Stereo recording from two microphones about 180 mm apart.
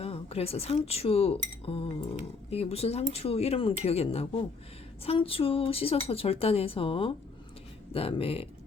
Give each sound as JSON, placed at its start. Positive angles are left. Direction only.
{"t": 0.0, "sound": "speech", "side_deg": 35}